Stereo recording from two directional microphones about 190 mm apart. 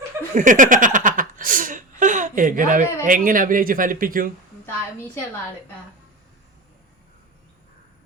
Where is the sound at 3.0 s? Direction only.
45° right (ahead or behind).